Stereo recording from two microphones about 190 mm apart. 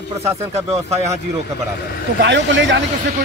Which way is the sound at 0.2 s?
15° right (ahead or behind).